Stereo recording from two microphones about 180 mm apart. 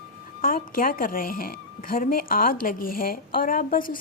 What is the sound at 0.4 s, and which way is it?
Speech, 50° left (ahead or behind).